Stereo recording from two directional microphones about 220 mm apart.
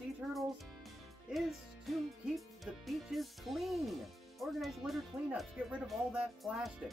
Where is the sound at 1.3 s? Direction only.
Centre (ahead or behind).